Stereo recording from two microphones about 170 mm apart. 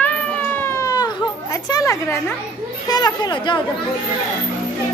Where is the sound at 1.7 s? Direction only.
20° left (ahead or behind).